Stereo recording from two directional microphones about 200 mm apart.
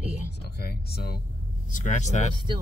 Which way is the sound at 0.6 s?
50° left (ahead or behind).